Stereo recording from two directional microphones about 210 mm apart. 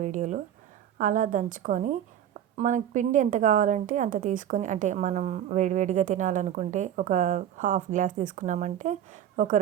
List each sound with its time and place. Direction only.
0.0 s a woman's voice: 35° right (ahead or behind)